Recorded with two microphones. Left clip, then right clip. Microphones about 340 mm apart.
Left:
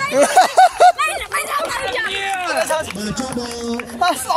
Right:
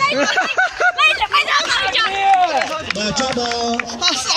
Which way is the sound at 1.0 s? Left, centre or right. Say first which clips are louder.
Right 6 dB; centre.